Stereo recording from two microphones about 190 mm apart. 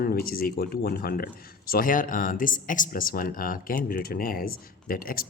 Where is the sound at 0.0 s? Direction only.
50° left (ahead or behind).